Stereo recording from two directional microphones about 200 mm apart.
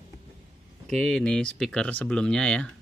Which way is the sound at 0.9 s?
5° left (ahead or behind).